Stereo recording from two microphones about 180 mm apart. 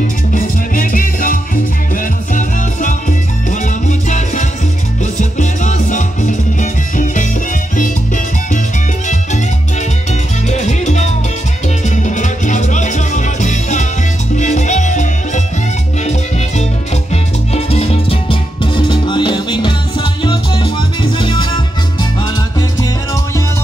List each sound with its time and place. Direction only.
0.3 s music: 50° left (ahead or behind)
10.5 s music: 40° left (ahead or behind)
17.1 s music: 35° left (ahead or behind)